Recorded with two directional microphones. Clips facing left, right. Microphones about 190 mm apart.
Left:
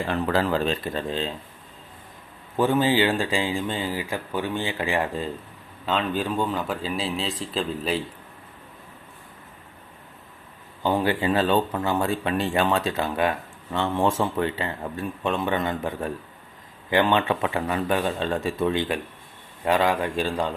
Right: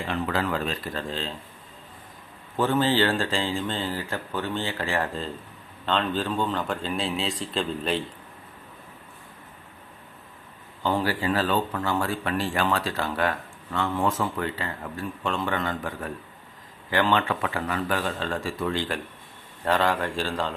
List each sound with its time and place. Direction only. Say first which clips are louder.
0.3 s speech: left 6 dB; 35° left (ahead or behind); by 1.3 s 20° left (ahead or behind)
2.6 s speech: left 2 dB; 15° left (ahead or behind)
10.8 s speech: left 3 dB; 20° left (ahead or behind)